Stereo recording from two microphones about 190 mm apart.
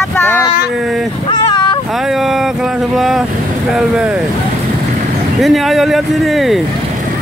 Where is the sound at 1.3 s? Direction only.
20° left (ahead or behind).